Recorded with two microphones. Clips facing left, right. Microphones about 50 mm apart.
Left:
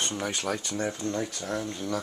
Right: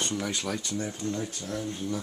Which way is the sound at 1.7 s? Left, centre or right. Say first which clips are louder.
Left 1 dB; left.